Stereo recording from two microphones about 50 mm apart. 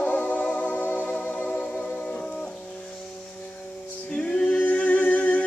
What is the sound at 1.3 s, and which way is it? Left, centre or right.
Music, centre.